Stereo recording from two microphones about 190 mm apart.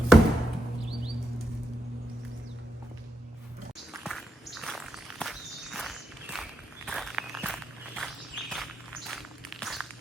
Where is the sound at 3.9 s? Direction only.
Centre (ahead or behind).